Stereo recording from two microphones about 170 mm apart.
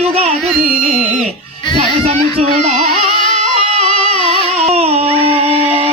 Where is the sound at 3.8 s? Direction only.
30° left (ahead or behind).